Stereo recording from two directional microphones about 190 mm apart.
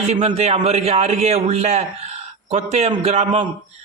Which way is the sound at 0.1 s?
35° right (ahead or behind).